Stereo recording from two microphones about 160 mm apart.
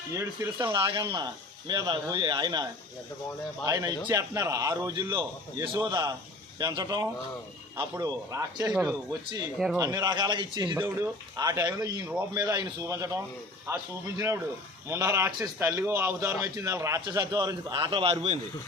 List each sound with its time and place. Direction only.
0.6 s a man's voice: 30° right (ahead or behind)
3.7 s a man's voice: 20° right (ahead or behind)
10.8 s a man's voice: 15° right (ahead or behind); by 18.3 s 40° right (ahead or behind)